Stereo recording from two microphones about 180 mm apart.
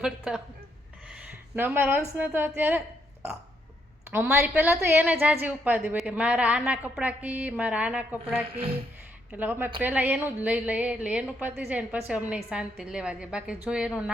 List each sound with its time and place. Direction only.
0.0 s a woman's voice: 5° right (ahead or behind)
4.1 s a woman's voice: 5° right (ahead or behind)
8.5 s speech: 30° right (ahead or behind)
9.3 s a woman's voice: 10° right (ahead or behind)